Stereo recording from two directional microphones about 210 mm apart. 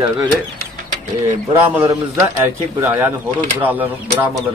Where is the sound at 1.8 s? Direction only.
10° right (ahead or behind).